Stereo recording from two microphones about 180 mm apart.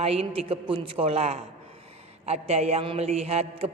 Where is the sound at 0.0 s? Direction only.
35° right (ahead or behind).